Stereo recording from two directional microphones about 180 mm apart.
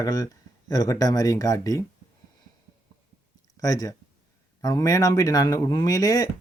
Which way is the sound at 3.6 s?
20° left (ahead or behind).